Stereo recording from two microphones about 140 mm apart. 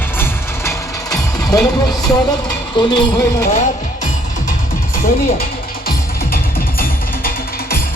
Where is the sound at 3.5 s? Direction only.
60° left (ahead or behind).